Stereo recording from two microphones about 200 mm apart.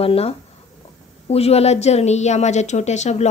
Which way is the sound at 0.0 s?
30° left (ahead or behind).